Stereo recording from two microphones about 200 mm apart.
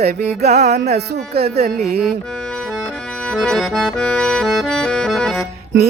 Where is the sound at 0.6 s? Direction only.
55° right (ahead or behind).